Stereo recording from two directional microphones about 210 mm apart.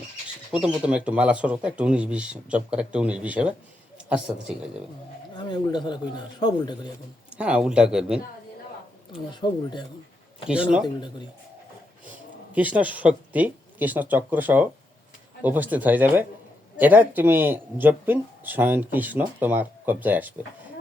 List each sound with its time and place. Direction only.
0.5 s speech: 5° right (ahead or behind)
5.3 s speech: 20° left (ahead or behind)
7.3 s speech: 5° right (ahead or behind)
9.3 s speech: 20° left (ahead or behind)
10.5 s speech: 5° right (ahead or behind)
12.5 s speech: 5° right (ahead or behind)